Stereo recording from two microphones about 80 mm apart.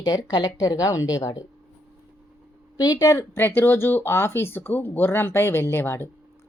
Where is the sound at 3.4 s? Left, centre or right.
Left.